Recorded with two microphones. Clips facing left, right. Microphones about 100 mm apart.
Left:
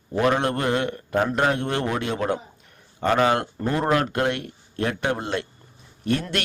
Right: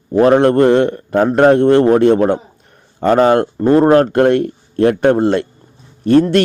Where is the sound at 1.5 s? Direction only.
40° right (ahead or behind).